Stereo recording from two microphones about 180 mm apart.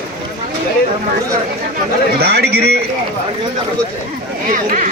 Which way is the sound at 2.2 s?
65° right (ahead or behind).